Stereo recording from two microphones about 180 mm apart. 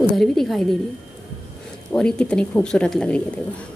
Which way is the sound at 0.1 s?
Centre (ahead or behind).